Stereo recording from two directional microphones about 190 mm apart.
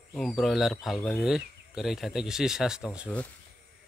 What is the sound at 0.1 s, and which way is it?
Speech, centre (ahead or behind).